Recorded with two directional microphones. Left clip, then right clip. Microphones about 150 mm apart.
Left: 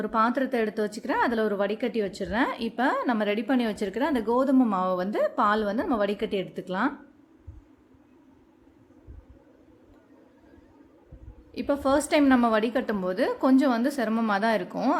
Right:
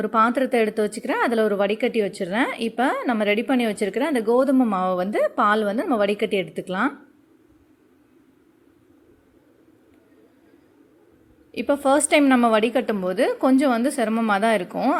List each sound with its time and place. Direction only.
0.0 s a woman's voice: 20° right (ahead or behind)
11.5 s a woman's voice: 20° right (ahead or behind)